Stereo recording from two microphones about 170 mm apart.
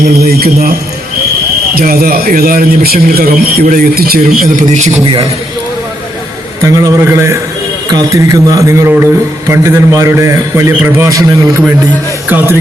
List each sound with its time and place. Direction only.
0.2 s speech: 65° right (ahead or behind)
1.7 s speech: 60° right (ahead or behind); by 5.0 s 45° right (ahead or behind)
6.6 s a man's voice: 20° right (ahead or behind)
12.3 s a man's voice: 10° right (ahead or behind)